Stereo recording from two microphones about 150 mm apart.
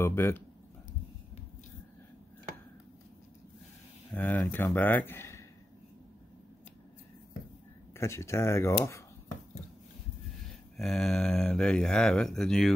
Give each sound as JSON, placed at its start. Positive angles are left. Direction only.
{"t": 0.0, "sound": "speech", "side_deg": 15}
{"t": 4.1, "sound": "speech", "side_deg": 10}
{"t": 7.9, "sound": "speech", "side_deg": 15}
{"t": 10.8, "sound": "speech", "side_deg": 0}